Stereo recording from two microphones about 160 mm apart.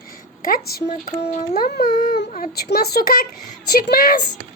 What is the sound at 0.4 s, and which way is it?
Speech, 65° left (ahead or behind).